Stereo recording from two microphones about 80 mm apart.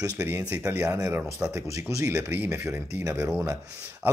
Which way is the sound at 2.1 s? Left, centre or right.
Centre.